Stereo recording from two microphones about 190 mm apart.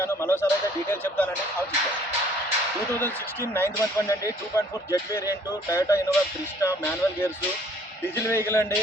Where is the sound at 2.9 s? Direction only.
10° left (ahead or behind).